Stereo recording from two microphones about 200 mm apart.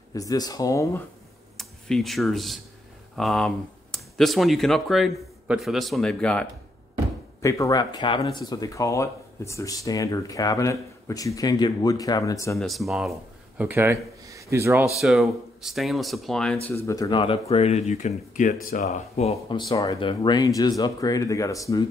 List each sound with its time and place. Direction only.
0.1 s speech: 20° left (ahead or behind)
1.6 s speech: centre (ahead or behind)
7.4 s speech: 15° left (ahead or behind)
12.5 s speech: centre (ahead or behind)
13.6 s speech: 10° right (ahead or behind)
15.0 s speech: centre (ahead or behind)
16.6 s speech: 15° left (ahead or behind)